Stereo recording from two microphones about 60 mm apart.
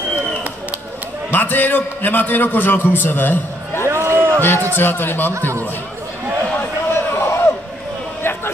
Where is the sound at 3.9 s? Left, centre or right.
Right.